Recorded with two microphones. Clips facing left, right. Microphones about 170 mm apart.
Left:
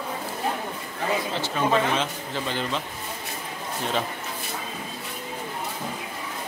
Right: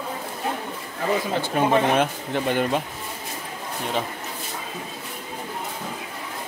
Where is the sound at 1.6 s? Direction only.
55° right (ahead or behind).